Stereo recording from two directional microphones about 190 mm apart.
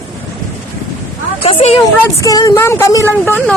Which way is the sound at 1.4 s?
30° left (ahead or behind).